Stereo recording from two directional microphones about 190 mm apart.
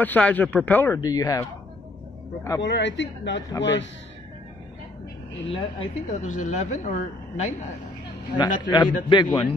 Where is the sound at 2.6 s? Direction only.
70° left (ahead or behind).